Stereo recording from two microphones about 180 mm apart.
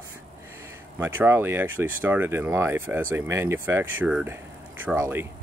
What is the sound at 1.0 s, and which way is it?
Speech, 10° right (ahead or behind).